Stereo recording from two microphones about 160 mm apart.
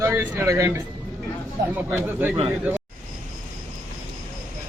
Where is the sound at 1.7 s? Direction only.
10° right (ahead or behind).